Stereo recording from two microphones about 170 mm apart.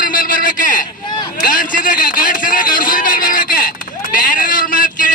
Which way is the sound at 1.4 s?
55° left (ahead or behind).